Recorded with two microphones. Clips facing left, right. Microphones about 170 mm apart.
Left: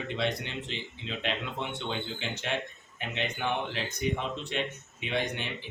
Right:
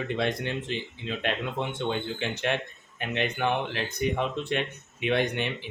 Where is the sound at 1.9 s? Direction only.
55° right (ahead or behind).